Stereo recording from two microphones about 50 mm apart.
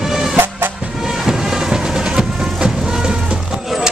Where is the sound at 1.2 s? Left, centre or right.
Centre.